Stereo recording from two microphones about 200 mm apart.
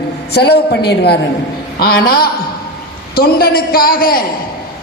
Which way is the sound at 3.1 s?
50° left (ahead or behind).